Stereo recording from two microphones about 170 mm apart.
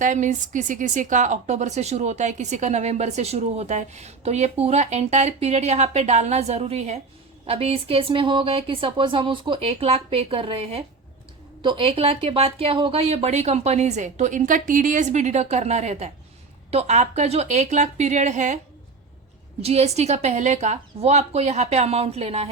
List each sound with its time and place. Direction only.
0.0 s a woman's voice: 50° right (ahead or behind)
19.6 s speech: 40° right (ahead or behind)